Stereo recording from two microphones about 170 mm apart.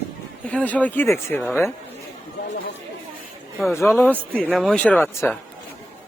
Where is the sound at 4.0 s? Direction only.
10° left (ahead or behind).